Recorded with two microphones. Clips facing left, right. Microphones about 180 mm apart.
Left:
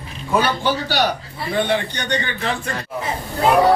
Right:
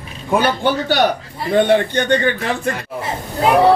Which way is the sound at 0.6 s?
55° right (ahead or behind).